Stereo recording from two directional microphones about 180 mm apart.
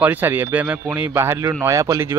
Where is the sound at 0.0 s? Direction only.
10° right (ahead or behind).